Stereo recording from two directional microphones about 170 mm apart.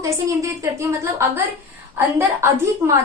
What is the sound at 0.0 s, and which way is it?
A woman's voice, 20° right (ahead or behind).